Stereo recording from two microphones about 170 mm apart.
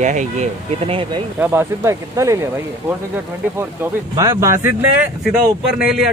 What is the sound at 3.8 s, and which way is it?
Speech, 15° right (ahead or behind).